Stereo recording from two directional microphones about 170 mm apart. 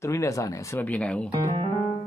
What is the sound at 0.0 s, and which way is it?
Speech, 15° left (ahead or behind).